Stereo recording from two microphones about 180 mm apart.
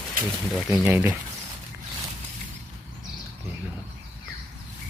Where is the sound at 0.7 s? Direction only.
10° right (ahead or behind).